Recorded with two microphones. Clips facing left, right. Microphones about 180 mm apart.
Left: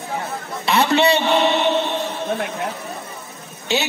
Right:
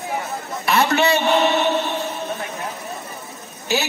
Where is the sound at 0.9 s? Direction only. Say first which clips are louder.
Left 4 dB; 25° left (ahead or behind).